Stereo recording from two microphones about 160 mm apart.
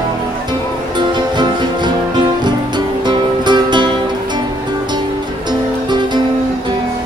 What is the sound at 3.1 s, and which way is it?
Music, 30° right (ahead or behind).